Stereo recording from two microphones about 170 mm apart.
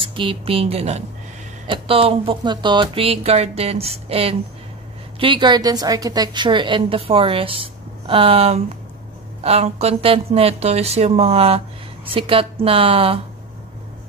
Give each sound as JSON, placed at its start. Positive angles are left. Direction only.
{"t": 0.0, "sound": "a woman's voice", "side_deg": -30}